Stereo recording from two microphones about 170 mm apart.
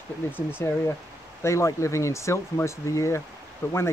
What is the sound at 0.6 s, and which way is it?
Speech, 15° left (ahead or behind).